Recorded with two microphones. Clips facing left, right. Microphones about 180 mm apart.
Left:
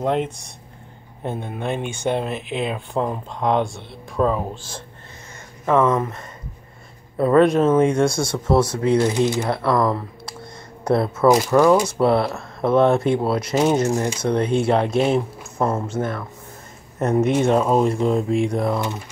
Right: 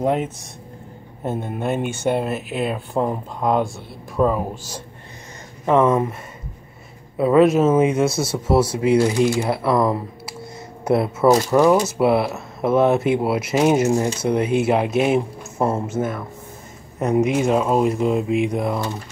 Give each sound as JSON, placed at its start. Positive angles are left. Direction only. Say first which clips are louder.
{"t": 0.0, "sound": "speech", "louder": "right 1 dB", "side_deg": -5}
{"t": 7.2, "sound": "speech", "louder": "right 1 dB", "side_deg": -5}
{"t": 9.1, "sound": "speech", "louder": "right 2 dB", "side_deg": 20}
{"t": 9.4, "sound": "a sound", "louder": "right 1 dB", "side_deg": -5}
{"t": 11.2, "sound": "speech", "louder": "even", "side_deg": -25}
{"t": 11.8, "sound": "speech", "louder": "even", "side_deg": -5}